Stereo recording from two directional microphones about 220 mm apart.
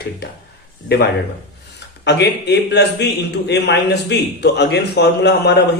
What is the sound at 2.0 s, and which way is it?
A man's voice, 50° left (ahead or behind).